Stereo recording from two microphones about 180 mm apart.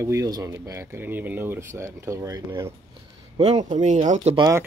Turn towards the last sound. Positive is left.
turn(degrees=-20)  # may be behind; listen again after turning